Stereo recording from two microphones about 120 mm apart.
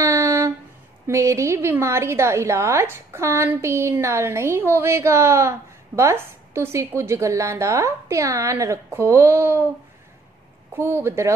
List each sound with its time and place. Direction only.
0.0 s a sound: 25° right (ahead or behind)
1.0 s a woman's voice: 25° right (ahead or behind)
10.7 s a woman's voice: 20° right (ahead or behind)